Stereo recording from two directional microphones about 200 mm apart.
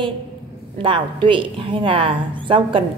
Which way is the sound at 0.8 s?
25° right (ahead or behind).